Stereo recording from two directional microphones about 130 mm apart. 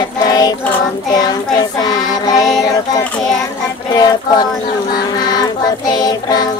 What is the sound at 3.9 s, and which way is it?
Child singing, 30° left (ahead or behind).